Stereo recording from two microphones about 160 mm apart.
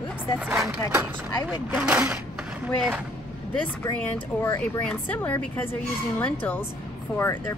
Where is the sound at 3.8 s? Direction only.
20° left (ahead or behind).